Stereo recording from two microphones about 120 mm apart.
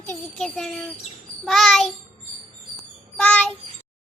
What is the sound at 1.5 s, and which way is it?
Child singing, 5° left (ahead or behind).